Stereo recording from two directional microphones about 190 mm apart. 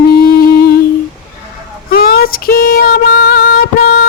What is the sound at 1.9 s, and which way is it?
Female singing, 50° left (ahead or behind).